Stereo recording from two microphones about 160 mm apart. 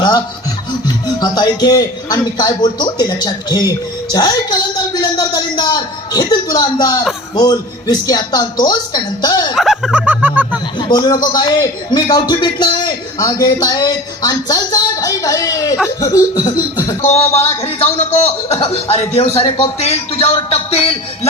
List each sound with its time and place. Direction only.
0.9 s a man's voice: 25° left (ahead or behind)
9.6 s a sound: centre (ahead or behind)
10.8 s a man's voice: 25° left (ahead or behind)
17.1 s a man's voice: 40° left (ahead or behind)